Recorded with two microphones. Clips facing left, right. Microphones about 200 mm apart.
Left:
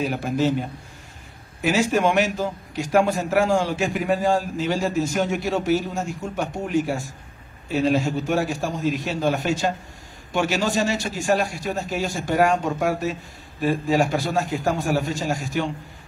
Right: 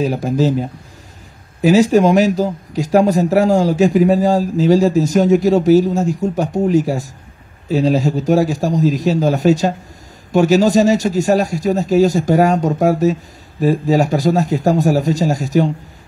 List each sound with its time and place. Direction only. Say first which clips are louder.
0.0 s speech: right 6 dB; 35° right (ahead or behind)